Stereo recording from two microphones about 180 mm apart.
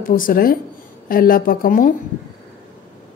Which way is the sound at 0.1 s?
50° left (ahead or behind).